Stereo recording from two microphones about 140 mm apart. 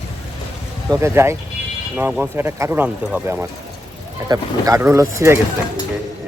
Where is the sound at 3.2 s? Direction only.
20° right (ahead or behind).